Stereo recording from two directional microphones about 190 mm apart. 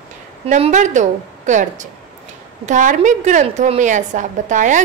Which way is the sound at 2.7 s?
40° right (ahead or behind).